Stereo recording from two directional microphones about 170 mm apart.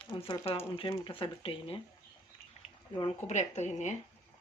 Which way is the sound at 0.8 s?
30° left (ahead or behind).